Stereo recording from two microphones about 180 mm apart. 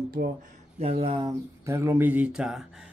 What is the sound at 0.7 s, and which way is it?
Speech, 30° right (ahead or behind).